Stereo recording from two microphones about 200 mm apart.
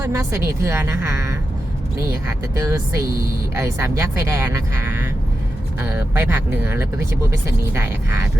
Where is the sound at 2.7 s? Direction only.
15° right (ahead or behind).